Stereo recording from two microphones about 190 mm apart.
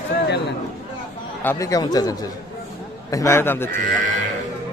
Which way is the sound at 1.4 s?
15° left (ahead or behind).